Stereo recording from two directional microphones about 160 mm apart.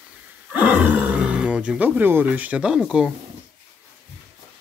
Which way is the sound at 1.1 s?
5° right (ahead or behind).